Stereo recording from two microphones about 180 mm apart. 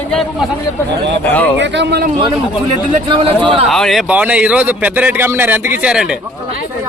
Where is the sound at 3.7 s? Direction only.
Centre (ahead or behind).